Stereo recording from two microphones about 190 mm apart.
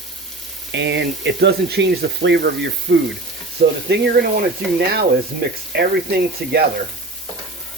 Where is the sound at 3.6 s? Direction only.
55° right (ahead or behind).